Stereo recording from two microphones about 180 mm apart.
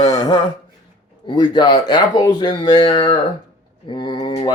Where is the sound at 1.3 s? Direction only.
25° left (ahead or behind).